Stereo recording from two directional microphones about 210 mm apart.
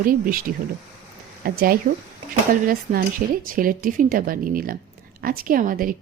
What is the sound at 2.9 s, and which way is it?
A woman's voice, 35° right (ahead or behind).